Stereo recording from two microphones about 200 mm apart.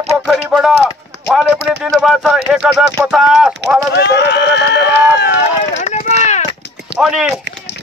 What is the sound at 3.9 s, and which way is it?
Run, 55° left (ahead or behind).